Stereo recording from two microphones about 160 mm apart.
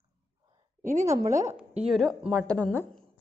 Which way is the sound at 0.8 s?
50° right (ahead or behind).